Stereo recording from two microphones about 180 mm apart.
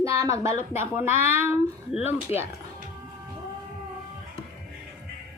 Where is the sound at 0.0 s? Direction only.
15° right (ahead or behind).